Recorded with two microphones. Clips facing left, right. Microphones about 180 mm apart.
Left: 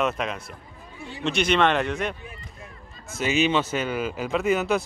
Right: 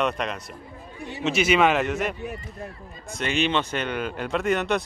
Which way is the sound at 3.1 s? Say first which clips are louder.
Left 2 dB; 5° left (ahead or behind).